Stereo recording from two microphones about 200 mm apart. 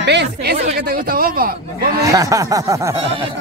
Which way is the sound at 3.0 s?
25° right (ahead or behind).